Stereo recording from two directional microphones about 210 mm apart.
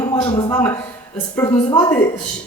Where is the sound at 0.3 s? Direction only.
20° left (ahead or behind).